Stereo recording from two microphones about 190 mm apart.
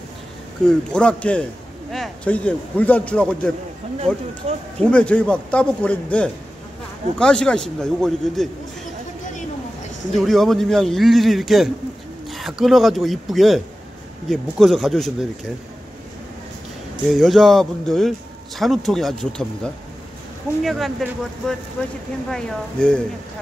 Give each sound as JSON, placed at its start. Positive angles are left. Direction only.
{"t": 0.7, "sound": "a man's voice", "side_deg": 5}
{"t": 4.7, "sound": "a man's voice", "side_deg": 5}
{"t": 10.1, "sound": "a man's voice", "side_deg": 0}
{"t": 16.9, "sound": "a man's voice", "side_deg": 0}